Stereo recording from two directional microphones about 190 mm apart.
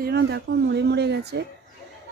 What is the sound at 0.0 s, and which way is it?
Speech, 60° right (ahead or behind).